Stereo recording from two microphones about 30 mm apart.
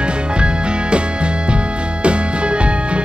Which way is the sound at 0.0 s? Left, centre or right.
Right.